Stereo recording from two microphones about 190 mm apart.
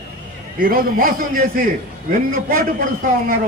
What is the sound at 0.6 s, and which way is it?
A man's voice, 50° right (ahead or behind).